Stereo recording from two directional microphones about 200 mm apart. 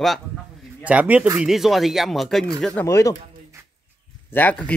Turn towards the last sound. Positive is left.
turn(degrees=5)  # may be behind; listen again after turning